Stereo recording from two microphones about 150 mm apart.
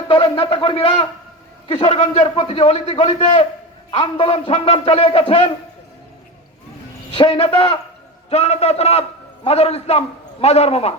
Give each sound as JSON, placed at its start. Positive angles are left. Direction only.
{"t": 0.1, "sound": "a man's voice", "side_deg": 35}
{"t": 7.1, "sound": "a man's voice", "side_deg": 30}
{"t": 8.3, "sound": "a man's voice", "side_deg": 45}